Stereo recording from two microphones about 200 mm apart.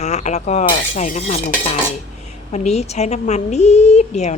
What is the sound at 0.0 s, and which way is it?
Speech, 35° left (ahead or behind).